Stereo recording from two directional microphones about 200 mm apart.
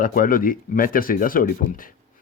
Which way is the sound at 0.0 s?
45° left (ahead or behind).